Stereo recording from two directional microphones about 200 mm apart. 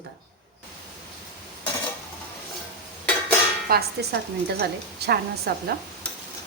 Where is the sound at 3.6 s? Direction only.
55° right (ahead or behind).